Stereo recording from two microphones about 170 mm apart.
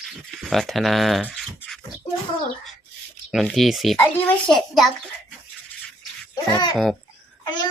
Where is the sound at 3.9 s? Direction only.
10° left (ahead or behind).